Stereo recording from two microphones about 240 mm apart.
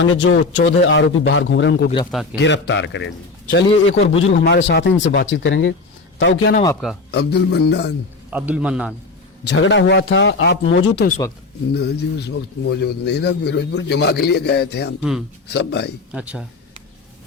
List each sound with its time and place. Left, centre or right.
0.0 s a man's voice: left
8.3 s a man's voice: centre
9.5 s a man's voice: left
16.1 s a man's voice: centre